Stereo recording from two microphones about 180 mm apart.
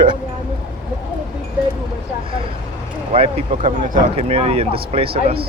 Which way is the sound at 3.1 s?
30° right (ahead or behind).